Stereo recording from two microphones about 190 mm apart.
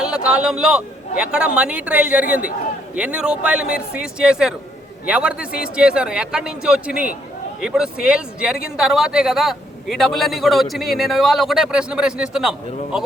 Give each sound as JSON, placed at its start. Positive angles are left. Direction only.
{"t": 0.0, "sound": "a man's voice", "side_deg": -5}
{"t": 5.5, "sound": "speech", "side_deg": 50}
{"t": 5.7, "sound": "a man's voice", "side_deg": -5}